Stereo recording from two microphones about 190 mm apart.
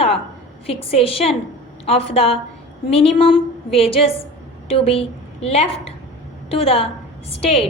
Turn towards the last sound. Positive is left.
turn(degrees=35)  # may be behind; listen again after turning